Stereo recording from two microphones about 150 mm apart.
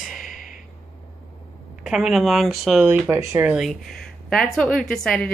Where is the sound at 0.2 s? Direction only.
60° left (ahead or behind).